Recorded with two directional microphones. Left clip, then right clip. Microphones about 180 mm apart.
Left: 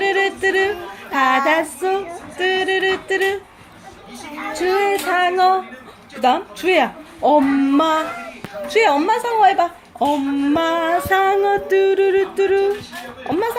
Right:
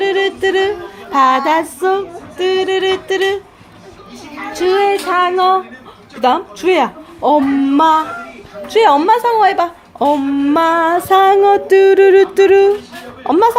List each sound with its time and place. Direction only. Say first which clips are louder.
0.0 s yodeling: right 3 dB; 20° right (ahead or behind)
1.1 s speech: right 4 dB; 20° right (ahead or behind)
2.4 s music: right 3 dB; 15° right (ahead or behind)
4.5 s child singing: right 5 dB; 15° right (ahead or behind)
6.2 s speech: right 4 dB; 15° right (ahead or behind)
9.0 s a woman's voice: right 5 dB; 20° right (ahead or behind)
10.5 s music: right 6 dB; 35° right (ahead or behind)
13.2 s speech: right 10 dB; 30° right (ahead or behind)